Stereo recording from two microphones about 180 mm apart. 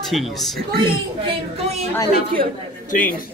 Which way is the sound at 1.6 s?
35° right (ahead or behind).